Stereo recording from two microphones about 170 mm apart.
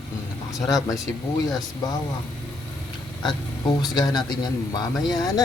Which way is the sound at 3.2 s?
25° left (ahead or behind).